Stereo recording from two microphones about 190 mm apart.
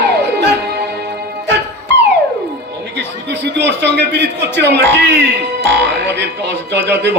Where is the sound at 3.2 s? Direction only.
65° right (ahead or behind).